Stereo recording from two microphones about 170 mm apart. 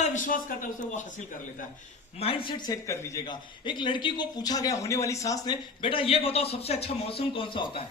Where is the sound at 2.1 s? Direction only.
30° left (ahead or behind).